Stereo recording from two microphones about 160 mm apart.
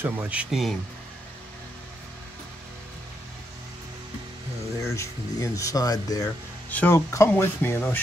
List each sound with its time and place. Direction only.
0.0 s speech: 10° right (ahead or behind)
4.8 s speech: 20° left (ahead or behind)